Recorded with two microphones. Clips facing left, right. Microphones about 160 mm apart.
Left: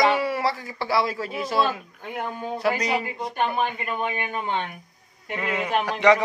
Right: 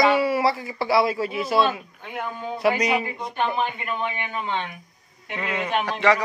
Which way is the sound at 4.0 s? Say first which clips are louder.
Left 2 dB; 45° left (ahead or behind).